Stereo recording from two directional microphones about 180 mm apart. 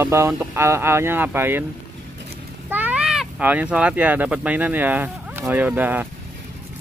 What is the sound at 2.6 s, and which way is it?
Speech, 10° right (ahead or behind).